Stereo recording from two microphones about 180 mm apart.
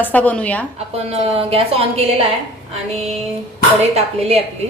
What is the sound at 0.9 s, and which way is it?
A woman's voice, 35° right (ahead or behind).